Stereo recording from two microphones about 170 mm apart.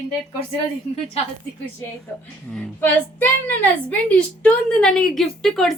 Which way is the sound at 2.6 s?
10° left (ahead or behind).